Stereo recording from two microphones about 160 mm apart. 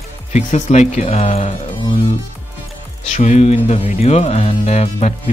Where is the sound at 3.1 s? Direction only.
45° left (ahead or behind).